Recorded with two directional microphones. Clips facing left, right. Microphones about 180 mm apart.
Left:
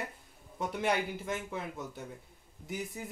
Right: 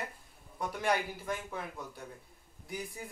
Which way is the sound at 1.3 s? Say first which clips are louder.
Left 1 dB; 20° left (ahead or behind).